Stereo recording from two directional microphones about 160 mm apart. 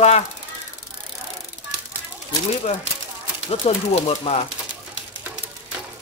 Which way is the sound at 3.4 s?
40° left (ahead or behind).